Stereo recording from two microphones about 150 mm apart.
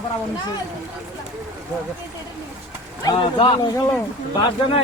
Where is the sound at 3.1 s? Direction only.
30° left (ahead or behind).